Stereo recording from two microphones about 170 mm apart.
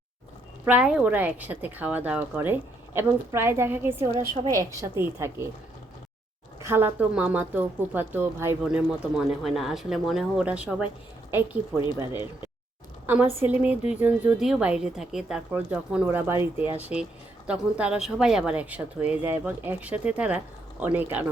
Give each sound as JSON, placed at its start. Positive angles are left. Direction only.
{"t": 0.6, "sound": "speech", "side_deg": -5}
{"t": 6.6, "sound": "speech", "side_deg": -15}
{"t": 8.6, "sound": "speech", "side_deg": -5}
{"t": 13.1, "sound": "speech", "side_deg": -10}